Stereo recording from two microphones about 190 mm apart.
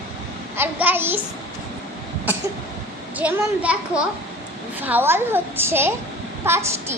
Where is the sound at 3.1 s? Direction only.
5° right (ahead or behind).